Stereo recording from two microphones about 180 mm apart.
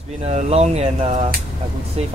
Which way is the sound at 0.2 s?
40° right (ahead or behind).